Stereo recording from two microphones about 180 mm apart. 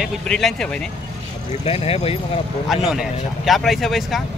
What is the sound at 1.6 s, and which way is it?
Speech, 35° left (ahead or behind).